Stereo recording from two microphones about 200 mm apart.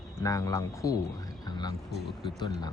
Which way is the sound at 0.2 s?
15° left (ahead or behind).